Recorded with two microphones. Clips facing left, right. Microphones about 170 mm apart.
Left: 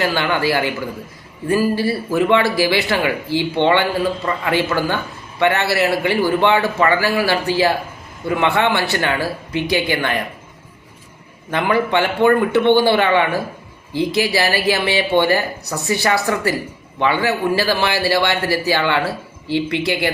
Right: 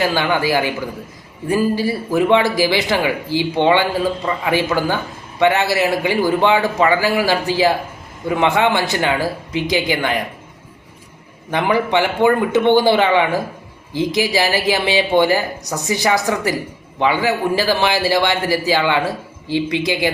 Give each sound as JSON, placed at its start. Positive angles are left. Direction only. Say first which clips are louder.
{"t": 0.0, "sound": "a man's voice", "louder": "right 1 dB", "side_deg": -15}
{"t": 11.5, "sound": "a man's voice", "louder": "right 1 dB", "side_deg": -15}